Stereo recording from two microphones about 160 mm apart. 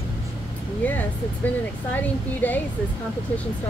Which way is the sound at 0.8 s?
10° left (ahead or behind).